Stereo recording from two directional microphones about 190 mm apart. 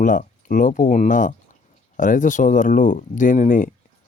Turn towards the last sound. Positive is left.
turn(degrees=40)  # may be behind; listen again after turning